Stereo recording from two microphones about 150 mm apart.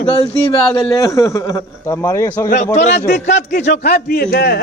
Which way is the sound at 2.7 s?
50° left (ahead or behind).